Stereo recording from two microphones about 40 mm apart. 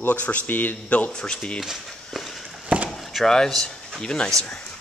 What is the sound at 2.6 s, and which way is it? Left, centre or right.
Chop, right.